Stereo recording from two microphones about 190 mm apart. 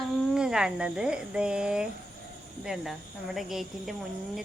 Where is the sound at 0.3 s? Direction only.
5° right (ahead or behind).